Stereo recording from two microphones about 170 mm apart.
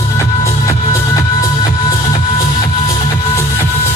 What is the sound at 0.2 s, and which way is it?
Music, 20° left (ahead or behind).